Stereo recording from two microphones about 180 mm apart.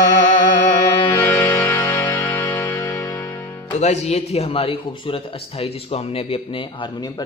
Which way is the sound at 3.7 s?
40° left (ahead or behind).